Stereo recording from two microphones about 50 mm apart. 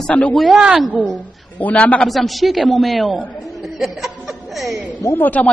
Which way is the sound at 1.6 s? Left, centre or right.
Left.